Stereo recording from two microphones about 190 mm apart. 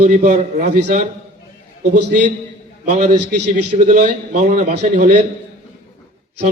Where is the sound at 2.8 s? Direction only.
40° right (ahead or behind).